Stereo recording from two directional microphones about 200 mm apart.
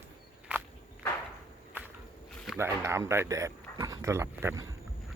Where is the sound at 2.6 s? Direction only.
15° right (ahead or behind).